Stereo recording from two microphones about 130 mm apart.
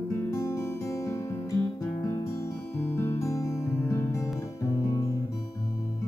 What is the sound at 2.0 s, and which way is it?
Music, 20° left (ahead or behind).